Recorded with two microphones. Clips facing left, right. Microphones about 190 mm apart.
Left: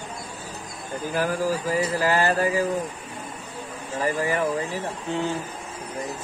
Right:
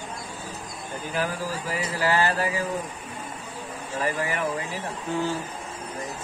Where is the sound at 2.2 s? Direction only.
45° left (ahead or behind).